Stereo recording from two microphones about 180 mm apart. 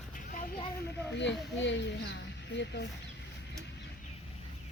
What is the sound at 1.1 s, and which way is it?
Speech, 80° left.